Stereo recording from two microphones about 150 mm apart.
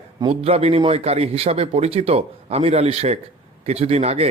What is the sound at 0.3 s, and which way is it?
A man's voice, 45° right (ahead or behind).